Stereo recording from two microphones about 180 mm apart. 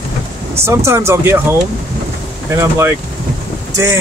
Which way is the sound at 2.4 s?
15° right (ahead or behind).